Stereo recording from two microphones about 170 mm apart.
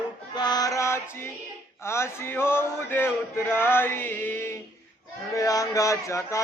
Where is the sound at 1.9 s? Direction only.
15° left (ahead or behind).